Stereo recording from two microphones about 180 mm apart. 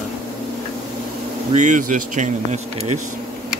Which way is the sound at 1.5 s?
45° right (ahead or behind).